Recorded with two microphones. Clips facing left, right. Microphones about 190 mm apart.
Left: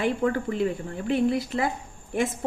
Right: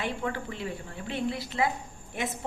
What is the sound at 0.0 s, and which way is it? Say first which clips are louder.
A woman's voice: left 8 dB; 45° left (ahead or behind).